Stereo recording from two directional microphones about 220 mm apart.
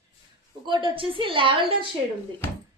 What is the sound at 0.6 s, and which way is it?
Speech, 20° right (ahead or behind).